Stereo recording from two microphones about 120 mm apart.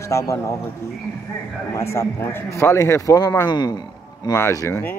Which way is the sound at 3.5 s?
35° left (ahead or behind).